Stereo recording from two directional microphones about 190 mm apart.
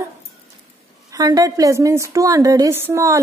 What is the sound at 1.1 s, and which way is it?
Speech, 20° right (ahead or behind).